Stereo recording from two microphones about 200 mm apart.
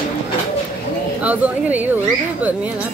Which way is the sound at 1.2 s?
5° right (ahead or behind).